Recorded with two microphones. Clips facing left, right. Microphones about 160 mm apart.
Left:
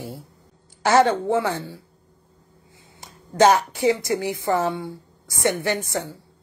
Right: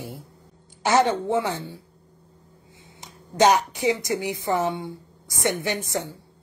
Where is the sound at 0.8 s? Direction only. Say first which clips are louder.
Left 3 dB; 20° right (ahead or behind).